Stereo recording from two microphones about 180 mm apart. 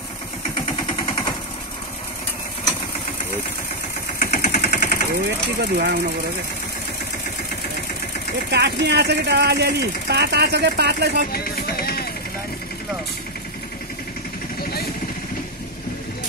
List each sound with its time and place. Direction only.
4.2 s vehicle: 50° left (ahead or behind)
5.6 s speech: 65° right (ahead or behind)
8.5 s speech: 65° right (ahead or behind)
11.3 s music: 60° left (ahead or behind)